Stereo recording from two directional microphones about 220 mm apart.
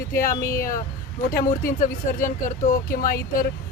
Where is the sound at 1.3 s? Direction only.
40° left (ahead or behind).